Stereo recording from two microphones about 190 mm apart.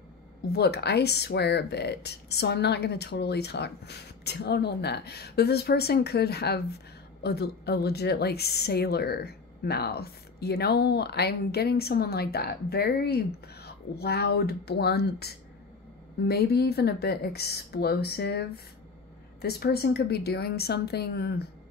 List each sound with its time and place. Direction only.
0.5 s a woman's voice: 60° left (ahead or behind)